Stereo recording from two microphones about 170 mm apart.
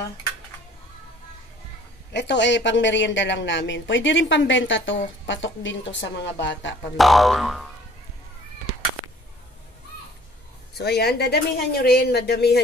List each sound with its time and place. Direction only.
2.1 s speech: 90° left
7.0 s speech: centre (ahead or behind)
10.8 s speech: 70° left (ahead or behind)